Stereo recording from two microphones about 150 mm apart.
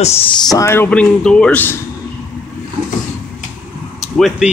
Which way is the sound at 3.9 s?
Centre (ahead or behind).